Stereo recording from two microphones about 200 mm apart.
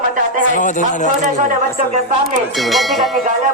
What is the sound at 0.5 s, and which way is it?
Speech, 40° left (ahead or behind).